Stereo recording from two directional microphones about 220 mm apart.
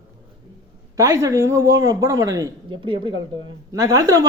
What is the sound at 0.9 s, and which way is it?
Speech, 15° right (ahead or behind).